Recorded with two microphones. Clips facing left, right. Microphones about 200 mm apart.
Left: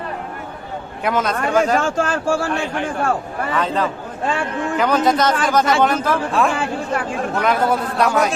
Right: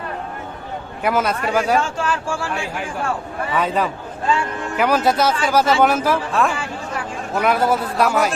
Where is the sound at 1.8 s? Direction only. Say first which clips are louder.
Left 3 dB; 45° left (ahead or behind).